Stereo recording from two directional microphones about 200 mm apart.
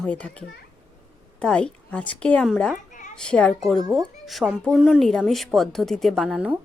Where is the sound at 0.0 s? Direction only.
5° left (ahead or behind).